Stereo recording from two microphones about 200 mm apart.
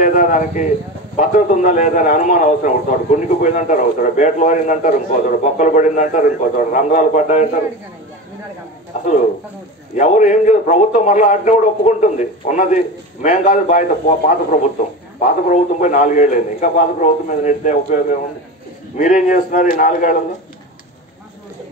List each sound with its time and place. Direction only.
0.0 s a man's voice: 40° left (ahead or behind)
8.9 s a man's voice: 35° left (ahead or behind)